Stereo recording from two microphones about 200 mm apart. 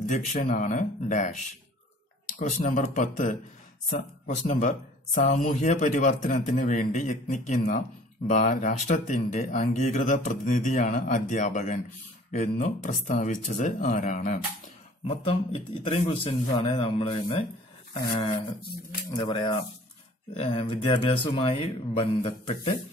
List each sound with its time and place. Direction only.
0.1 s speech: 40° left (ahead or behind)
15.2 s speech: 25° left (ahead or behind)
19.0 s speech: 25° left (ahead or behind)